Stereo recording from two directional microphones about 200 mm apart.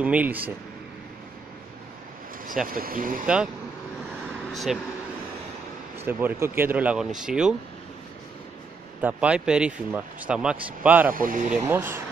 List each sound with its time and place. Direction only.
0.0 s speech: 10° right (ahead or behind)
2.7 s speech: 45° right (ahead or behind)
4.7 s speech: centre (ahead or behind)
5.9 s speech: 10° right (ahead or behind)
9.0 s speech: 5° right (ahead or behind)
11.1 s speech: 45° right (ahead or behind)
11.5 s speech: 10° right (ahead or behind)